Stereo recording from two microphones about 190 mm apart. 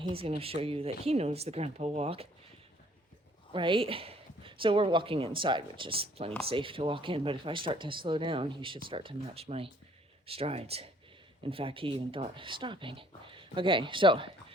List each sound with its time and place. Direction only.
0.0 s speech: 30° right (ahead or behind)
3.5 s a woman's voice: 25° right (ahead or behind)